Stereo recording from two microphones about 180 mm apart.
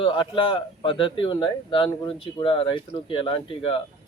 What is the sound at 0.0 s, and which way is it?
A man's voice, 30° left (ahead or behind).